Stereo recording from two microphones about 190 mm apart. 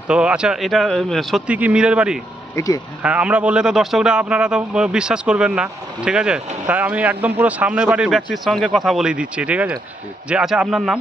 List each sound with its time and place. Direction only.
0.1 s a man's voice: 5° right (ahead or behind)
2.5 s speech: 20° left (ahead or behind)
3.0 s a man's voice: 5° right (ahead or behind)